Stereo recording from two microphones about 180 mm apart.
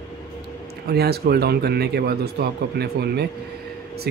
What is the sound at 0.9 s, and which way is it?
Speech, 60° right (ahead or behind).